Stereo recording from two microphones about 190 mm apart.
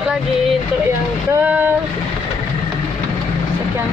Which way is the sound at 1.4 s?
10° right (ahead or behind).